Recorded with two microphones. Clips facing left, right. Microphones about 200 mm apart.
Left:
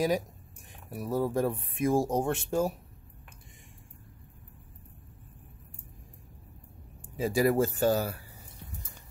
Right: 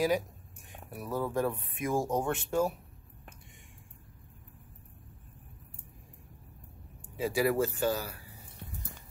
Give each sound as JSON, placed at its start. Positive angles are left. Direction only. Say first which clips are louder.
{"t": 0.9, "sound": "speech", "louder": "left 3 dB", "side_deg": 35}
{"t": 7.2, "sound": "speech", "louder": "left 3 dB", "side_deg": 40}